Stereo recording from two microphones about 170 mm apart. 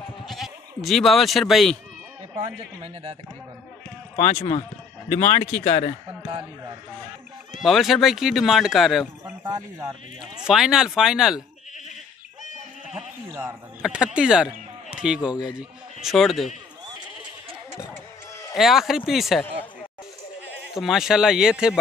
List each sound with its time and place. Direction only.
0.3 s speech: centre (ahead or behind)
2.8 s speech: 30° right (ahead or behind)
4.2 s a man's voice: 40° left (ahead or behind)
7.6 s speech: centre (ahead or behind)
9.2 s speech: 15° right (ahead or behind)
10.4 s speech: 5° right (ahead or behind)
12.9 s sheep: 10° right (ahead or behind)
13.8 s speech: 5° right (ahead or behind)
18.6 s speech: centre (ahead or behind)
20.7 s speech: centre (ahead or behind)